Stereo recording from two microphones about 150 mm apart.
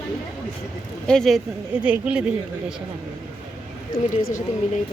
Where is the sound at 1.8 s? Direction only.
5° right (ahead or behind).